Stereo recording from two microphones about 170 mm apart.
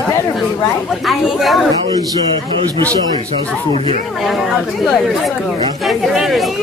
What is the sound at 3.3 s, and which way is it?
Speech, 35° right (ahead or behind).